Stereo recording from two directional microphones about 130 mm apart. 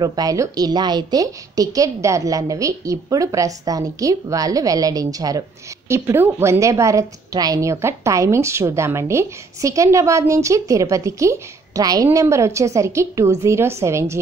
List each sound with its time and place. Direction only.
0.0 s a woman's voice: 30° right (ahead or behind)